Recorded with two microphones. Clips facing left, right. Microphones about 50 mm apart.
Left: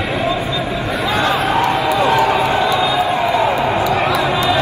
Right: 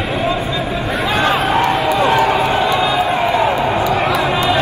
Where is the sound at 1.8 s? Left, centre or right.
Right.